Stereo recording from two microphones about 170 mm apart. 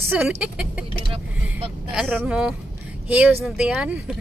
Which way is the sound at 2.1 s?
10° right (ahead or behind).